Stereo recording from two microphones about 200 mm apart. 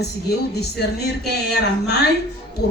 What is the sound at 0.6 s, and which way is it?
Speech, 55° left (ahead or behind).